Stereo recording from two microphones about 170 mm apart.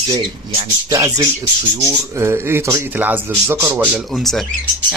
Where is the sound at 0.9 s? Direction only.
20° right (ahead or behind).